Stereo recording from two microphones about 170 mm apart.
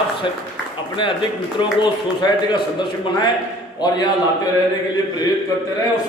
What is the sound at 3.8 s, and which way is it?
Speech, 25° left (ahead or behind).